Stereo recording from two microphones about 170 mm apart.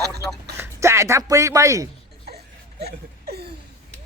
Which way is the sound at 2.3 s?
70° right (ahead or behind).